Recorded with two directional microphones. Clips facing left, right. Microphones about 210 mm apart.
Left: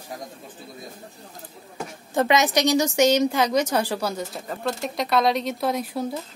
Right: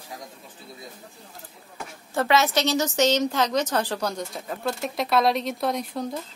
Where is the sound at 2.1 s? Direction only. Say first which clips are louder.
Left 2 dB; 15° left (ahead or behind).